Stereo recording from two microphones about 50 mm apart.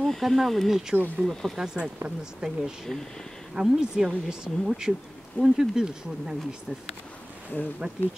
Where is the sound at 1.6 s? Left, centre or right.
Centre.